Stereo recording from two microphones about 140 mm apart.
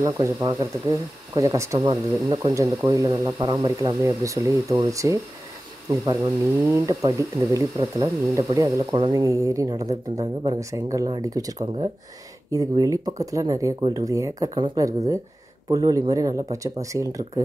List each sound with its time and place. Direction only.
0.0 s speech: 25° right (ahead or behind)